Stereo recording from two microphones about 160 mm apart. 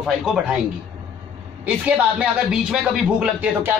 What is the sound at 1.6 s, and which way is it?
A man's voice, 10° right (ahead or behind).